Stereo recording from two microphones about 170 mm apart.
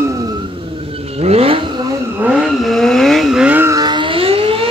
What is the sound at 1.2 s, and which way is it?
Vehicle, 35° right (ahead or behind).